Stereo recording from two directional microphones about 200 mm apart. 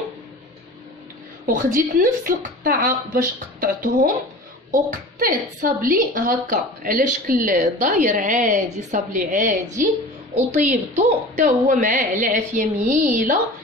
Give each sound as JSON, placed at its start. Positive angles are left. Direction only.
{"t": 1.4, "sound": "a woman's voice", "side_deg": -40}